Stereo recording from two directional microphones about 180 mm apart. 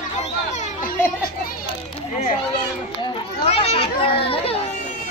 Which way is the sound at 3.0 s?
30° left (ahead or behind).